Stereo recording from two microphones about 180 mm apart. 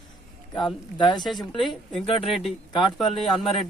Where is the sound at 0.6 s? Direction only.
25° left (ahead or behind).